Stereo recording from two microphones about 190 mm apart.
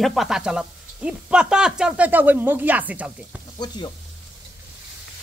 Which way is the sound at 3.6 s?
20° left (ahead or behind).